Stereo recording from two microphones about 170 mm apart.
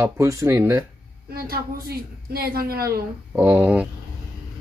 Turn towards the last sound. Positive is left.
turn(degrees=-10)  # may be behind; listen again after turning